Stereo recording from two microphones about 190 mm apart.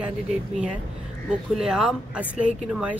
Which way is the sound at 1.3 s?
5° right (ahead or behind).